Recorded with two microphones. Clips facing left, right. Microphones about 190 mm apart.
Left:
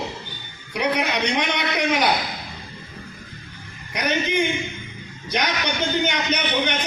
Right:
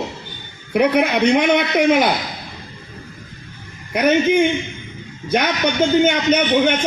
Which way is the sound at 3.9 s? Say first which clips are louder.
Right 9 dB; 50° right (ahead or behind).